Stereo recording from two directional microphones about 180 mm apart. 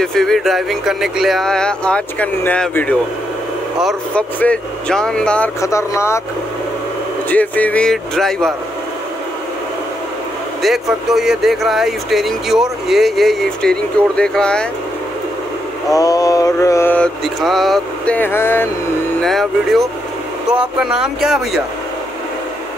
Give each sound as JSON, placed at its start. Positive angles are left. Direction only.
{"t": 0.0, "sound": "speech", "side_deg": 5}
{"t": 5.6, "sound": "mantra", "side_deg": 15}
{"t": 7.2, "sound": "speech", "side_deg": 10}
{"t": 10.6, "sound": "speech", "side_deg": 0}
{"t": 15.9, "sound": "mantra", "side_deg": 20}
{"t": 19.2, "sound": "speech", "side_deg": 0}